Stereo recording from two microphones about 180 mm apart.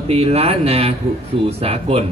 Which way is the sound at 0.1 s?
35° right (ahead or behind).